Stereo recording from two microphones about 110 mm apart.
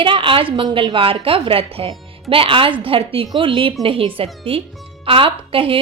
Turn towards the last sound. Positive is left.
turn(degrees=-55)  # may be behind; listen again after turning